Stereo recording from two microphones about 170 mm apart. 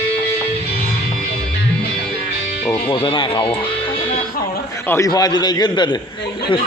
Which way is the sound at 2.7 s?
30° left (ahead or behind).